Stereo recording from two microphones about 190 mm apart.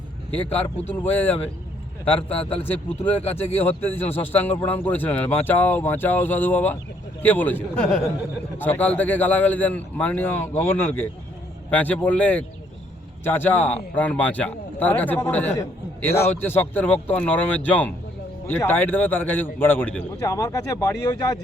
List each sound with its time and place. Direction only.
0.3 s speech: 10° left (ahead or behind)
2.5 s speech: 30° left (ahead or behind)
3.6 s speech: 10° left (ahead or behind)